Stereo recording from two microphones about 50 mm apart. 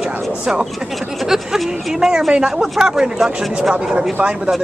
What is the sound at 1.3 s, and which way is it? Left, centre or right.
Speech, centre.